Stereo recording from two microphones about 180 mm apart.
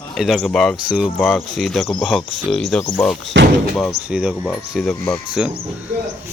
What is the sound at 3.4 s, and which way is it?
Speech, 75° right (ahead or behind).